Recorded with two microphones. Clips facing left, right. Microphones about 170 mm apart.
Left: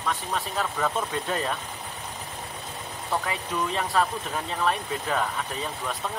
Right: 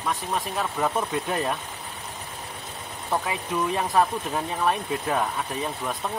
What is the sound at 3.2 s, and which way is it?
Speech, 15° right (ahead or behind).